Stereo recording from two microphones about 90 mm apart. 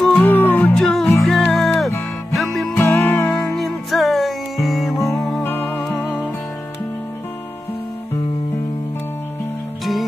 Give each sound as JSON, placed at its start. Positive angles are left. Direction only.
{"t": 0.2, "sound": "music", "side_deg": 20}
{"t": 0.7, "sound": "music", "side_deg": 5}
{"t": 2.7, "sound": "music", "side_deg": 20}
{"t": 3.5, "sound": "music", "side_deg": 0}
{"t": 5.0, "sound": "music", "side_deg": 35}
{"t": 5.6, "sound": "music", "side_deg": 10}